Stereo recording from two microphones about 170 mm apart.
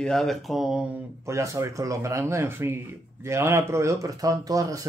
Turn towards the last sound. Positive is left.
turn(degrees=-20)  # may be behind; listen again after turning